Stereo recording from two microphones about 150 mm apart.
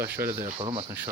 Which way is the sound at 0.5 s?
40° right (ahead or behind).